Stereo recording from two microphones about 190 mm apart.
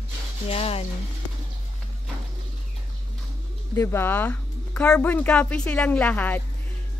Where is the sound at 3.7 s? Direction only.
15° left (ahead or behind).